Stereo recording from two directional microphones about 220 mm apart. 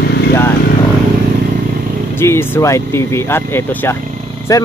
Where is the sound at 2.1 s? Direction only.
10° left (ahead or behind).